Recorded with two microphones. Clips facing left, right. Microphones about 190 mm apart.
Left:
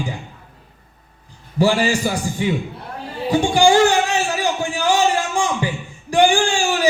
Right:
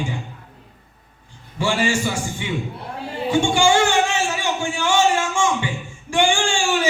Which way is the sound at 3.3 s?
35° left (ahead or behind).